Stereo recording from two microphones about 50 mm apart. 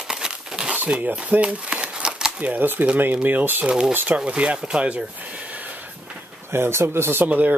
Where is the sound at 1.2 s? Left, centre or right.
Right.